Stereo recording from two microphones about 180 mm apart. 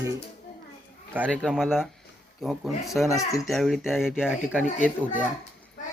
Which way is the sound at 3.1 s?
15° left (ahead or behind).